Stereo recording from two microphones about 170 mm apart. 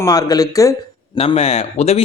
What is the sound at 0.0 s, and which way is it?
Speech, 20° left (ahead or behind).